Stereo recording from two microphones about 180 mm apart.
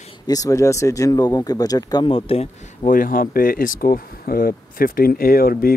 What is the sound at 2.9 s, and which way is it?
Speech, 50° left (ahead or behind).